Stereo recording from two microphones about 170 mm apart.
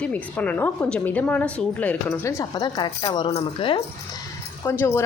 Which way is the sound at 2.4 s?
25° left (ahead or behind).